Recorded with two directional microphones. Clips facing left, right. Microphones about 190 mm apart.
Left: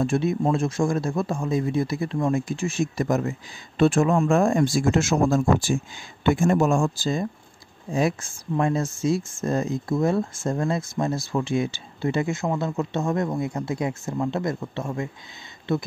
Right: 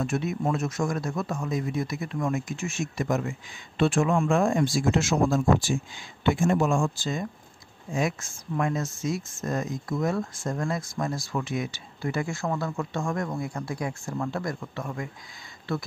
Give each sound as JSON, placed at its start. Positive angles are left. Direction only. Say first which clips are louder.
{"t": 0.0, "sound": "a man's voice", "louder": "left 5 dB", "side_deg": 30}
{"t": 7.9, "sound": "speech", "louder": "left 4 dB", "side_deg": 35}